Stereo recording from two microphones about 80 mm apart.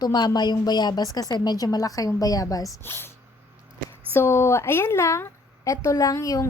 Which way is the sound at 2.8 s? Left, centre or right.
Left.